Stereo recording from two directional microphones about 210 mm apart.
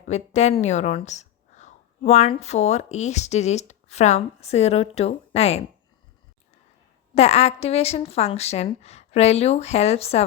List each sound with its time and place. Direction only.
0.1 s speech: 35° left (ahead or behind)
7.2 s a woman's voice: 30° left (ahead or behind)